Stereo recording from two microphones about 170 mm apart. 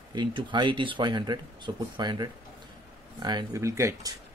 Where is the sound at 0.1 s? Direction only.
25° right (ahead or behind).